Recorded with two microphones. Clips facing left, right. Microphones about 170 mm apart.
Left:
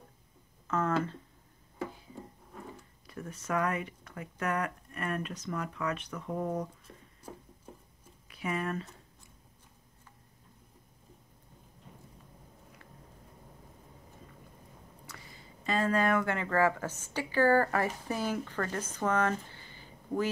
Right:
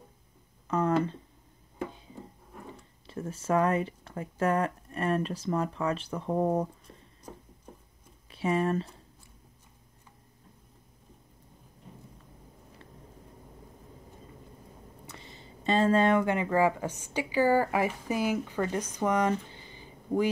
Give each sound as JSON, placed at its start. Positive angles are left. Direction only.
{"t": 0.7, "sound": "speech", "side_deg": -15}
{"t": 2.6, "sound": "speech", "side_deg": -25}
{"t": 8.3, "sound": "speech", "side_deg": -30}
{"t": 15.0, "sound": "speech", "side_deg": -25}